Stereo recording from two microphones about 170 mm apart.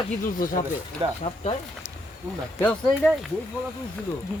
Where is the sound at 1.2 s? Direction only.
35° left (ahead or behind).